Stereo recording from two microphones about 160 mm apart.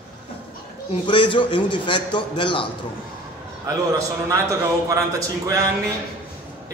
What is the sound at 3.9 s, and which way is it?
Speech, 20° right (ahead or behind).